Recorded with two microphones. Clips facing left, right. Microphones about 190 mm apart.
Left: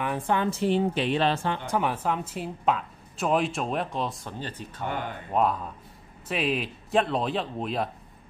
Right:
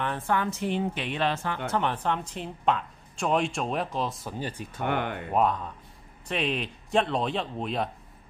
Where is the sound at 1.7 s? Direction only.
10° left (ahead or behind); by 4.6 s 10° right (ahead or behind).